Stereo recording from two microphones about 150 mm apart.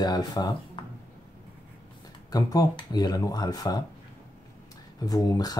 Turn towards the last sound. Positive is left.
turn(degrees=25)  # may be behind; listen again after turning